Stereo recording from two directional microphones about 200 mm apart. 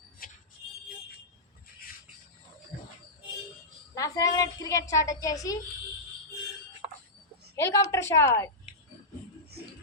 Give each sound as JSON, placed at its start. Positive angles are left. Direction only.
{"t": 0.2, "sound": "music", "side_deg": 45}
{"t": 3.9, "sound": "a woman's voice", "side_deg": 15}
{"t": 6.8, "sound": "a sound", "side_deg": -30}
{"t": 7.5, "sound": "a woman's voice", "side_deg": 15}